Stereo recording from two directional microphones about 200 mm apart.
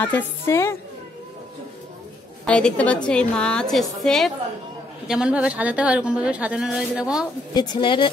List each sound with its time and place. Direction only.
0.0 s a woman's voice: 10° left (ahead or behind)
2.4 s a woman's voice: 5° left (ahead or behind)
7.5 s a woman's voice: 20° left (ahead or behind)